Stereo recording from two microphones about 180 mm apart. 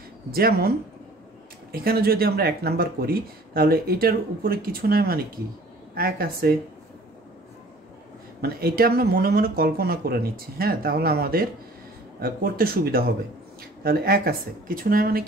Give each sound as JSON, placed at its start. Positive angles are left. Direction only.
{"t": 0.3, "sound": "speech", "side_deg": -55}
{"t": 8.4, "sound": "speech", "side_deg": -60}